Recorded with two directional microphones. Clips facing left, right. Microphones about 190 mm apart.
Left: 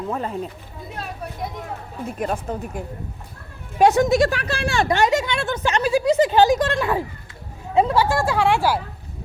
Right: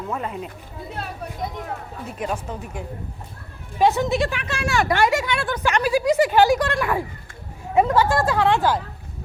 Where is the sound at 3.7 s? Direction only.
75° left (ahead or behind).